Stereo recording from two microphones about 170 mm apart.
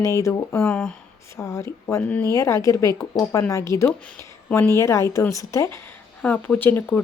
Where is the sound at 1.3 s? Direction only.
15° left (ahead or behind).